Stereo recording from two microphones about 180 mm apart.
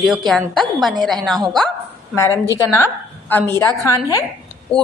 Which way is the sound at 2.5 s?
15° left (ahead or behind).